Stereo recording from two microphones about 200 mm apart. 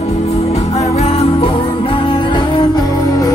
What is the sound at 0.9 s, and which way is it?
Music, 30° left (ahead or behind).